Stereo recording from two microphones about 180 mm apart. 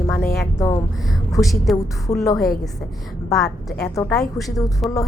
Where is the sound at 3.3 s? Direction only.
Centre (ahead or behind).